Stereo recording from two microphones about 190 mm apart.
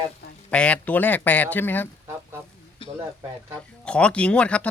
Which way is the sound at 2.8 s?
25° left (ahead or behind).